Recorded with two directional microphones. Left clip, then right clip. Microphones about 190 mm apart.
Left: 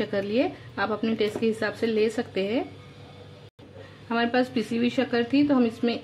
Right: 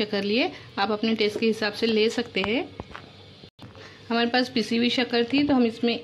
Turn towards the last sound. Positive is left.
turn(degrees=-35)  # may be behind; listen again after turning